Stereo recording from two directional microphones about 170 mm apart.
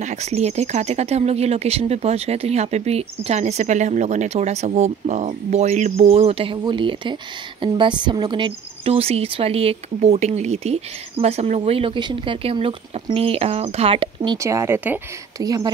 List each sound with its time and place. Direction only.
0.0 s speech: 40° right (ahead or behind); by 15.7 s 20° right (ahead or behind)